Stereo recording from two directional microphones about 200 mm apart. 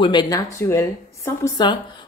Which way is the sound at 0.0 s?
25° left (ahead or behind).